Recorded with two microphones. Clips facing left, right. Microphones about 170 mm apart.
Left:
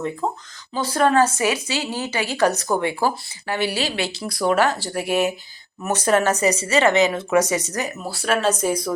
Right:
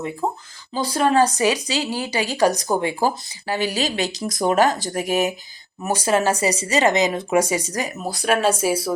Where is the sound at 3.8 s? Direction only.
40° right (ahead or behind).